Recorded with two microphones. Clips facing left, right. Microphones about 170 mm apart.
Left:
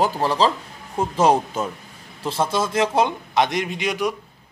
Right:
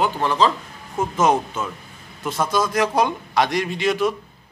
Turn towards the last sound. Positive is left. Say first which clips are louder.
# right 3 dB
turn(degrees=15)  # may be behind; listen again after turning